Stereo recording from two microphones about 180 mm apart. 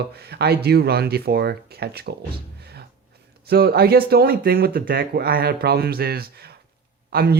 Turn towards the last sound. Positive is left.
turn(degrees=-60)  # may be behind; listen again after turning